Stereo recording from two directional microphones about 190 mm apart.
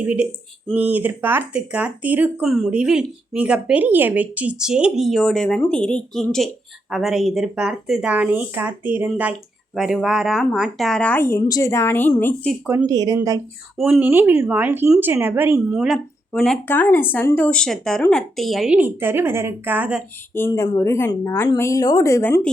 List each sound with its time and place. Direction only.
0.0 s speech: 10° right (ahead or behind); by 12.5 s 10° left (ahead or behind)
12.9 s speech: 20° right (ahead or behind)
13.7 s speech: 5° right (ahead or behind)
20.3 s speech: 15° left (ahead or behind)